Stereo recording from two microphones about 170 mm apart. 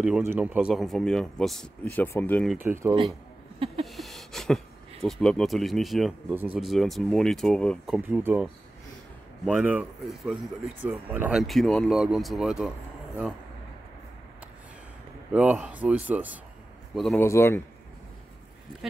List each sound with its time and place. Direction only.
0.0 s speech: 10° right (ahead or behind); by 2.4 s 10° left (ahead or behind)
2.4 s speech: 10° right (ahead or behind)
3.5 s a sound: 35° right (ahead or behind)
3.8 s a sound: centre (ahead or behind)
5.0 s speech: 5° left (ahead or behind)
6.3 s speech: 10° right (ahead or behind)
6.6 s speech: centre (ahead or behind)
9.5 s speech: 5° right (ahead or behind)
15.3 s speech: 5° right (ahead or behind)
17.2 s speech: 15° left (ahead or behind)